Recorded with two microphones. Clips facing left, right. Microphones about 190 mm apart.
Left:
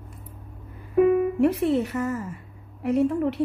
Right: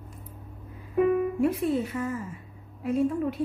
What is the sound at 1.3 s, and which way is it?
A woman's voice, 75° left (ahead or behind).